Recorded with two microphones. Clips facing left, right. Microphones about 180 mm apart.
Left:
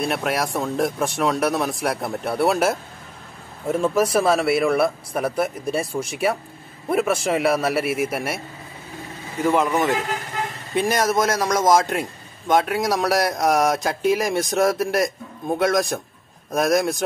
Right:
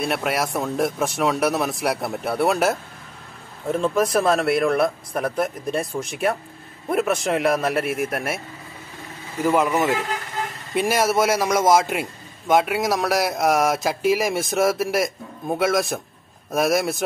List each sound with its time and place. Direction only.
0.0 s a man's voice: centre (ahead or behind)
9.4 s a man's voice: 5° right (ahead or behind)